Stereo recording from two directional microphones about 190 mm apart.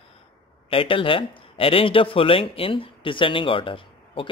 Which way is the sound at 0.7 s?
30° left (ahead or behind).